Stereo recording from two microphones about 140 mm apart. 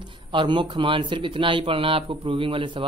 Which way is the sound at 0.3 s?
35° right (ahead or behind).